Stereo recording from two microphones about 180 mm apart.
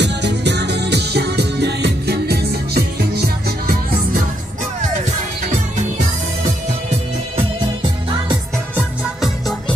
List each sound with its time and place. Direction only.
0.0 s music: 70° right (ahead or behind); by 4.2 s 55° right (ahead or behind)
8.7 s music: centre (ahead or behind)